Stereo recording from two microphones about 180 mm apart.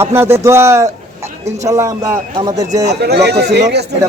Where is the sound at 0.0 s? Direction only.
15° right (ahead or behind).